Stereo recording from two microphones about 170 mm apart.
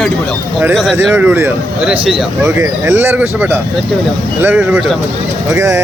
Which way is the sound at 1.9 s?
30° right (ahead or behind).